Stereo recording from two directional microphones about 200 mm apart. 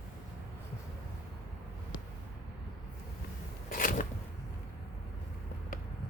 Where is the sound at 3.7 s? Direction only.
45° left (ahead or behind).